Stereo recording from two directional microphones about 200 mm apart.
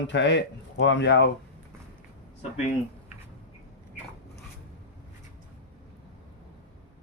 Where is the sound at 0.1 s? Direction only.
60° left (ahead or behind).